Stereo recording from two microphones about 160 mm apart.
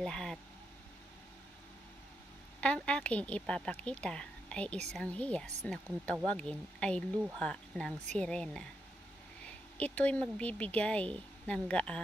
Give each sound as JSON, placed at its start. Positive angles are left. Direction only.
{"t": 0.0, "sound": "a sound", "side_deg": 5}
{"t": 2.6, "sound": "speech", "side_deg": 5}
{"t": 9.8, "sound": "speech", "side_deg": 10}